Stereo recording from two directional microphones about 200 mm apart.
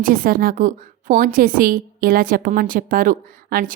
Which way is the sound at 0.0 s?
45° right (ahead or behind).